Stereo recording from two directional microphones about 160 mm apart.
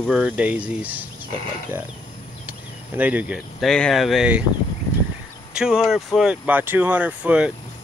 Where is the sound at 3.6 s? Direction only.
5° left (ahead or behind).